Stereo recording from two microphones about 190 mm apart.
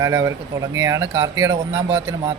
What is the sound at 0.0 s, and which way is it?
Speech, 15° right (ahead or behind).